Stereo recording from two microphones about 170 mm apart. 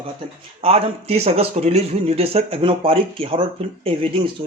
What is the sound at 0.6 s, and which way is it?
Speech, 35° right (ahead or behind).